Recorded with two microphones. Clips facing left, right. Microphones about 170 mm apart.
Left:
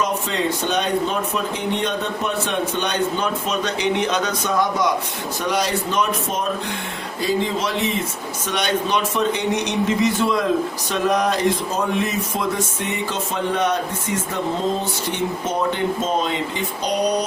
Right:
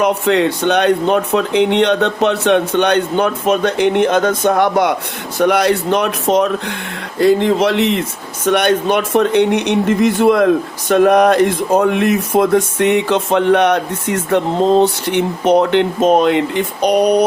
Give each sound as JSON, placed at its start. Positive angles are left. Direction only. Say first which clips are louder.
{"t": 0.0, "sound": "speech", "louder": "right 9 dB", "side_deg": -65}
{"t": 7.2, "sound": "speech", "louder": "right 10 dB", "side_deg": -65}
{"t": 8.4, "sound": "speech", "louder": "right 9 dB", "side_deg": -60}